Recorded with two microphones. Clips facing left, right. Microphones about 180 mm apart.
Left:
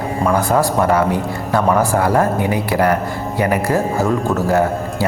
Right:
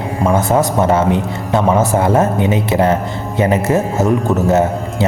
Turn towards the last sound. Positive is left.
turn(degrees=-20)  # may be behind; listen again after turning